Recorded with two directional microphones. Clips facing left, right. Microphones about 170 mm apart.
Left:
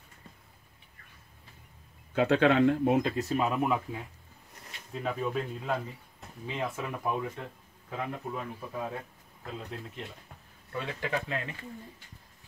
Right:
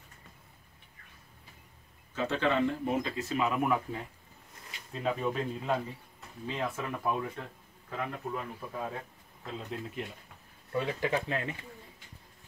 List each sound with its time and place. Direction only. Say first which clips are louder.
2.1 s speech: left 6 dB; 65° left (ahead or behind)
3.6 s speech: even; 15° left (ahead or behind)
4.6 s speech: right 2 dB; centre (ahead or behind)
10.7 s speech: right 3 dB; 20° right (ahead or behind)